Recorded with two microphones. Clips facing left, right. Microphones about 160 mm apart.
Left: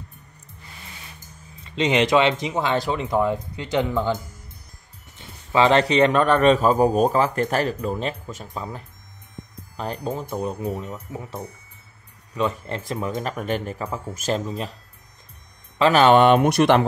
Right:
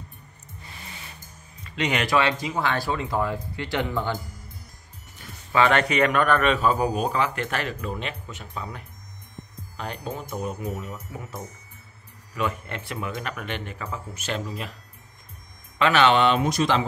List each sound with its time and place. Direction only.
1.6 s speech: 25° left (ahead or behind)
5.2 s a man's voice: 25° left (ahead or behind)
15.8 s speech: 40° left (ahead or behind); by 16.8 s 65° left (ahead or behind)